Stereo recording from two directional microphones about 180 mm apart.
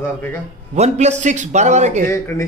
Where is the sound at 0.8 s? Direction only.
40° right (ahead or behind).